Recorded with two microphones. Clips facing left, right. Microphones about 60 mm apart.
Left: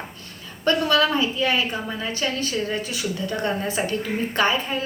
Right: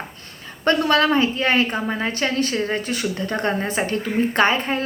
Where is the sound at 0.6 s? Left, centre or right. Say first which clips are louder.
Right 2 dB; right.